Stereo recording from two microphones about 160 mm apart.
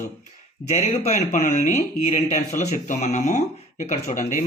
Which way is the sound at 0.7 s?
45° left (ahead or behind).